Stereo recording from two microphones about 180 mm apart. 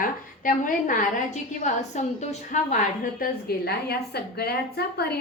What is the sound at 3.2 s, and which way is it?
A woman's voice, 60° left (ahead or behind).